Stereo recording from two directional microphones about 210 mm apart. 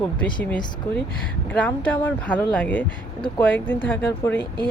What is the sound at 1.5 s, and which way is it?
Speech, 5° left (ahead or behind).